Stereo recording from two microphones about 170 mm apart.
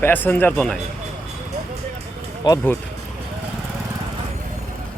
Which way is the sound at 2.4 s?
25° left (ahead or behind).